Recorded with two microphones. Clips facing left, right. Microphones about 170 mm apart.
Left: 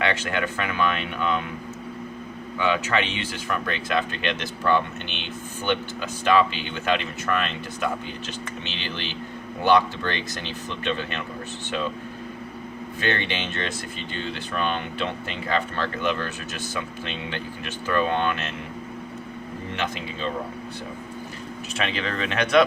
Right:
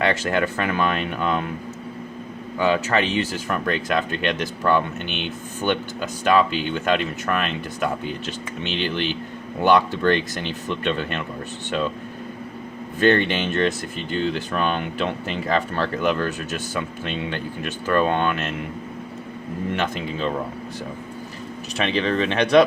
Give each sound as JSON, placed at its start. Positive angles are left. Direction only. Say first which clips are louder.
{"t": 0.0, "sound": "speech", "louder": "right 4 dB", "side_deg": -40}
{"t": 2.6, "sound": "speech", "louder": "right 4 dB", "side_deg": -40}
{"t": 13.0, "sound": "speech", "louder": "right 9 dB", "side_deg": -45}
{"t": 21.9, "sound": "speech", "louder": "right 8 dB", "side_deg": -30}